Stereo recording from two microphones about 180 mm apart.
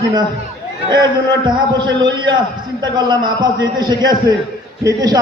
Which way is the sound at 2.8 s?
25° right (ahead or behind).